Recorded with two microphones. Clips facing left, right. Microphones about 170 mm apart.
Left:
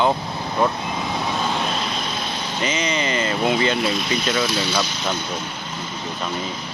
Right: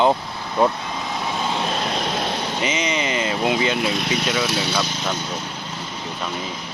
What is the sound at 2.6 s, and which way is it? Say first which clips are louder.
Speech: left 2 dB; 15° right (ahead or behind).